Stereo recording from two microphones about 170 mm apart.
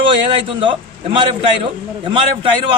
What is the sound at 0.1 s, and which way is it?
A man's voice, 30° right (ahead or behind).